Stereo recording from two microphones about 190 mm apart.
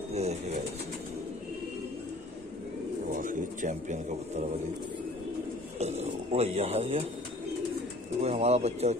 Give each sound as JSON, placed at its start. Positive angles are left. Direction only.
{"t": 0.1, "sound": "speech", "side_deg": -35}
{"t": 3.1, "sound": "pigeon", "side_deg": -45}
{"t": 5.8, "sound": "speech", "side_deg": -35}
{"t": 8.2, "sound": "speech", "side_deg": -35}